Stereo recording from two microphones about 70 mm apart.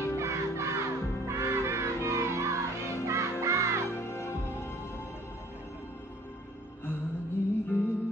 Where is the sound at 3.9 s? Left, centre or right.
Left.